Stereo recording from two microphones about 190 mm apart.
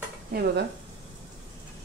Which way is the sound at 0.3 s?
55° right (ahead or behind).